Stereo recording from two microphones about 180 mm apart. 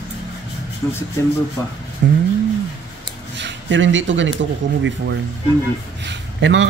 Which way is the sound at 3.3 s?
85° right.